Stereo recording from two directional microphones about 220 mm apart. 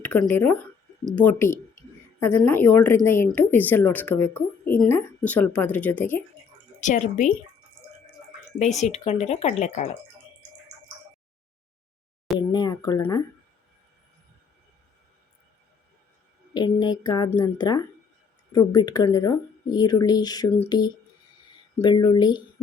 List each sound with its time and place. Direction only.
0.0 s speech: 5° left (ahead or behind)
6.8 s speech: 35° left (ahead or behind)
8.5 s speech: 30° left (ahead or behind)
12.5 s a sound: 20° left (ahead or behind)
16.6 s speech: 20° left (ahead or behind)